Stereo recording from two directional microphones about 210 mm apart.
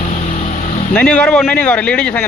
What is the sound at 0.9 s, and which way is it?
Speech, 5° left (ahead or behind).